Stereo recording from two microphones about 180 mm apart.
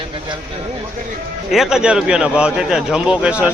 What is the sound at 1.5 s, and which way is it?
A man's voice, centre (ahead or behind).